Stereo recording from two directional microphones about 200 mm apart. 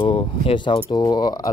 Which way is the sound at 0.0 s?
25° left (ahead or behind).